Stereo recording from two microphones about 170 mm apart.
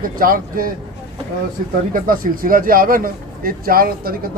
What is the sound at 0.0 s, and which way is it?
Speech, 55° right (ahead or behind).